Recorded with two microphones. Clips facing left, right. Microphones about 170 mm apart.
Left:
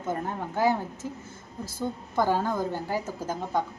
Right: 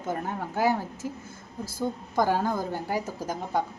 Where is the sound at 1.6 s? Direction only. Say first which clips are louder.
Right 2 dB; 10° right (ahead or behind).